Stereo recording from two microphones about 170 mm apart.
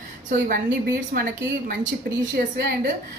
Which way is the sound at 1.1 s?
55° right (ahead or behind).